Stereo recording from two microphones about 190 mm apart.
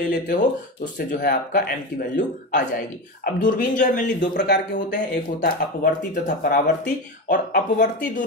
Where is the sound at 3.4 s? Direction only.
45° left (ahead or behind).